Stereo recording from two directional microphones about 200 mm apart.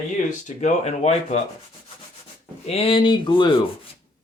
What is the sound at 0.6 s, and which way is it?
Speech, 35° left (ahead or behind).